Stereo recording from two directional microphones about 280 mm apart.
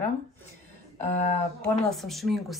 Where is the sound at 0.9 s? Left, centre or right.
Left.